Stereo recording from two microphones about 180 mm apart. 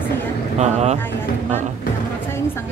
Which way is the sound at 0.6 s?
40° right (ahead or behind).